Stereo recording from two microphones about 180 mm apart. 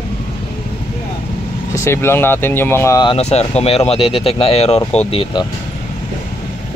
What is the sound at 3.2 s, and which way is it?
Speech, 35° left (ahead or behind).